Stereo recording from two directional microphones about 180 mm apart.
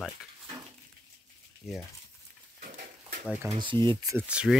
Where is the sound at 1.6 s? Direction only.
Centre (ahead or behind).